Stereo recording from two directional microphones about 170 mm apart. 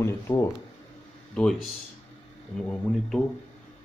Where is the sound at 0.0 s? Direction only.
20° left (ahead or behind).